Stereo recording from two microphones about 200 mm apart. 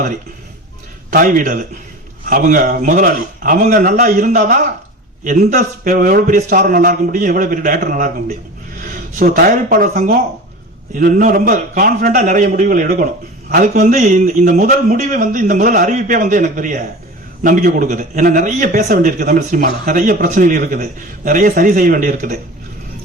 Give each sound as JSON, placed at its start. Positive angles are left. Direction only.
{"t": 1.1, "sound": "a man's voice", "side_deg": -45}